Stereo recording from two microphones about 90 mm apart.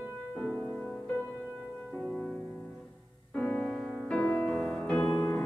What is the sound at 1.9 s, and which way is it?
Music, 5° left (ahead or behind).